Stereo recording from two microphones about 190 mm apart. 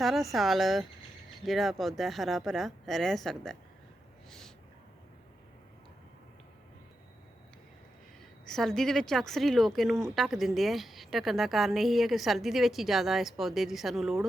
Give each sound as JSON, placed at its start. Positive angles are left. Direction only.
{"t": 0.0, "sound": "a woman's voice", "side_deg": 0}
{"t": 4.3, "sound": "owl", "side_deg": 0}
{"t": 8.4, "sound": "a woman's voice", "side_deg": 0}